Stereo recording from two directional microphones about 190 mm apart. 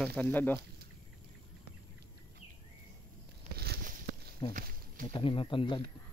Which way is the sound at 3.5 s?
55° right (ahead or behind).